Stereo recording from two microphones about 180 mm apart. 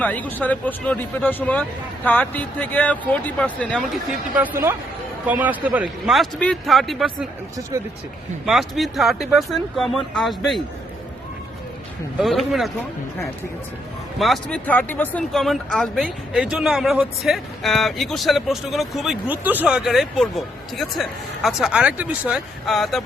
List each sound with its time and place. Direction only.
0.0 s speech: 10° left (ahead or behind)
5.2 s speech: 10° right (ahead or behind)
7.7 s speech: 20° right (ahead or behind)
8.4 s speech: centre (ahead or behind)
12.2 s speech: centre (ahead or behind)
14.2 s speech: 5° left (ahead or behind)